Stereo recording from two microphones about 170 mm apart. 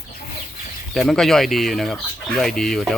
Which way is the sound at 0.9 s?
Centre (ahead or behind).